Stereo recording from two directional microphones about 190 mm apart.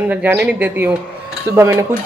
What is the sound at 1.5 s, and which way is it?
Speech, 15° right (ahead or behind).